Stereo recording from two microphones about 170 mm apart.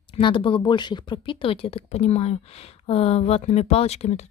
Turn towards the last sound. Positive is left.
turn(degrees=40)  # may be behind; listen again after turning